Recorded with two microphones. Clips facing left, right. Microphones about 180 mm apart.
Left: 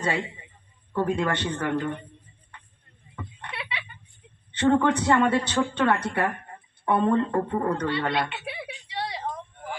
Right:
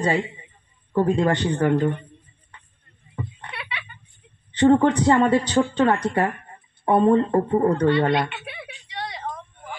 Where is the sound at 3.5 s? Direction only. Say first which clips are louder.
Left 1 dB; 25° left (ahead or behind).